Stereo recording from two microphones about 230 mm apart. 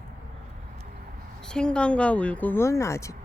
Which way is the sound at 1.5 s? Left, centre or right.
Centre.